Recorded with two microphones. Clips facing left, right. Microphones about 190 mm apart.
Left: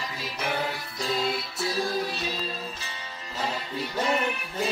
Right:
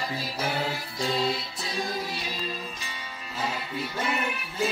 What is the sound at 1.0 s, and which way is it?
Music, 25° right (ahead or behind).